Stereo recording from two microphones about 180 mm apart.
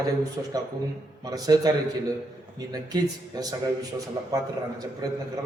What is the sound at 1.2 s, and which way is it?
A man's voice, 20° right (ahead or behind).